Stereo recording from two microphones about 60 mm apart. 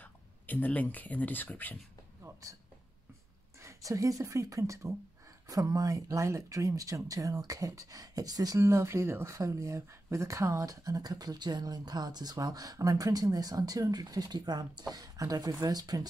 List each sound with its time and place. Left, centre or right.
0.0 s speech: left
3.6 s speech: right
5.5 s speech: right
8.5 s speech: right
9.3 s speech: right